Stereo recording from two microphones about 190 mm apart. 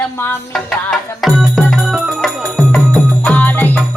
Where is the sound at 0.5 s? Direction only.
Centre (ahead or behind).